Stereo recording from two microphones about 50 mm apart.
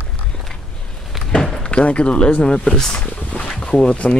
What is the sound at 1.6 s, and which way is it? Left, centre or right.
Speech, left.